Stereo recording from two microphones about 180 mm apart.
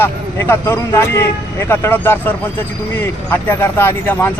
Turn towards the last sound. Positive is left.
turn(degrees=10)  # may be behind; listen again after turning